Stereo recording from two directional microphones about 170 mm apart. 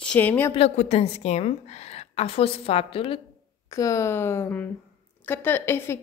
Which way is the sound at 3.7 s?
20° left (ahead or behind).